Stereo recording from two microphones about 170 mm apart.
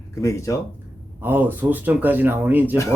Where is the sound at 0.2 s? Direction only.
20° left (ahead or behind).